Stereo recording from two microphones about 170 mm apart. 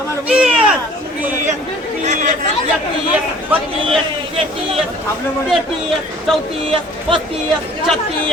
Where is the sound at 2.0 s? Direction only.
45° right (ahead or behind).